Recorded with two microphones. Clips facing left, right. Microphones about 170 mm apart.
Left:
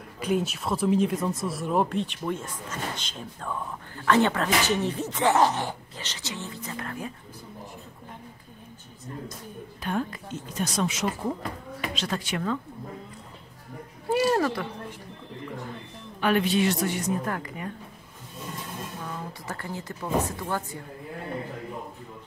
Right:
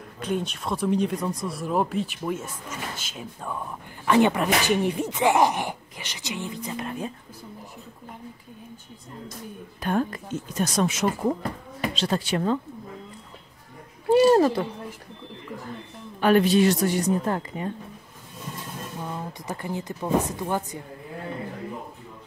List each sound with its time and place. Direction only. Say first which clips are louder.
0.2 s speech: left 2 dB; 5° left (ahead or behind); by 7.1 s 20° right (ahead or behind)
9.8 s a woman's voice: right 4 dB; 45° right (ahead or behind)
11.8 s a woman's voice: right 5 dB; 30° right (ahead or behind)
14.1 s speech: right 7 dB; 30° right (ahead or behind)
16.2 s a woman's voice: right 5 dB; 40° right (ahead or behind)
17.2 s speech: right 4 dB; 25° right (ahead or behind)
18.9 s a woman's voice: right 3 dB; 20° right (ahead or behind)